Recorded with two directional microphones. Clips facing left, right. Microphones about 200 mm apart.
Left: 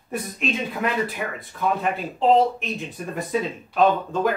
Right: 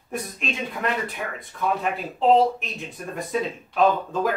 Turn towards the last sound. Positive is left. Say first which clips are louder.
# left 1 dB
turn(degrees=0)  # may be behind; listen again after turning